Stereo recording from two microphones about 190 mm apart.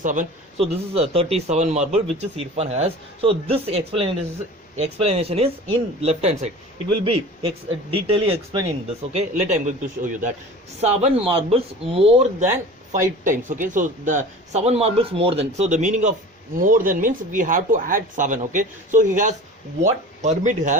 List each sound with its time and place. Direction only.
0.0 s a man's voice: 45° right (ahead or behind)